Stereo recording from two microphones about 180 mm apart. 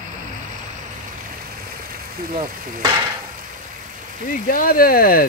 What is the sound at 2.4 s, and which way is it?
Sizzle, 30° right (ahead or behind).